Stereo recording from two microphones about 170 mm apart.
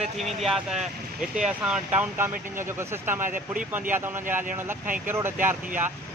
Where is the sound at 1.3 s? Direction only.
5° right (ahead or behind).